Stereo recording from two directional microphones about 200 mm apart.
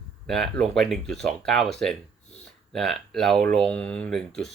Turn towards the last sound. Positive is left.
turn(degrees=0)  # may be behind; listen again after turning